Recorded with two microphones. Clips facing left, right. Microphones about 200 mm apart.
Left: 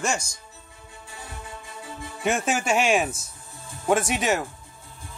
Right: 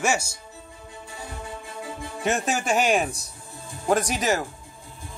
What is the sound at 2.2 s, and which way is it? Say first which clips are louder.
Speech: left 1 dB; centre (ahead or behind).